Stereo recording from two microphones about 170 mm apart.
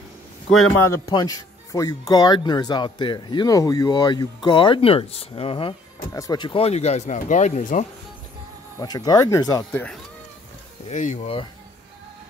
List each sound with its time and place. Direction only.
0.7 s speech: 15° left (ahead or behind); by 7.8 s 45° left (ahead or behind)
8.7 s speech: 25° left (ahead or behind)
9.7 s speech: 5° left (ahead or behind)
10.9 s speech: 45° left (ahead or behind)